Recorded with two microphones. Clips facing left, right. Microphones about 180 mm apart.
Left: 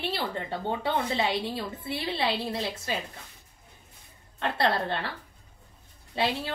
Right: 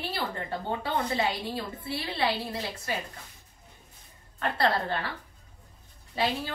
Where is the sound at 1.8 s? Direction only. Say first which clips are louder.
Even; 25° left (ahead or behind).